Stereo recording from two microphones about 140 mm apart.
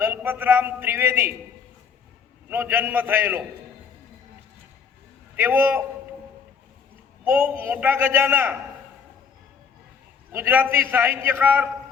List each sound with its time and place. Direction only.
0.0 s a man's voice: 15° right (ahead or behind)
2.5 s a man's voice: 15° right (ahead or behind)
5.4 s a man's voice: 15° right (ahead or behind)
7.3 s a man's voice: 15° right (ahead or behind)
10.3 s a man's voice: 15° right (ahead or behind)